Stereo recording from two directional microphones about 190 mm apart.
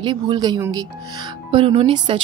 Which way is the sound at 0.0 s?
25° right (ahead or behind).